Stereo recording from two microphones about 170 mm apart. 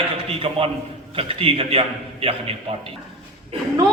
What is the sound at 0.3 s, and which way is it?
A man's voice, 35° right (ahead or behind).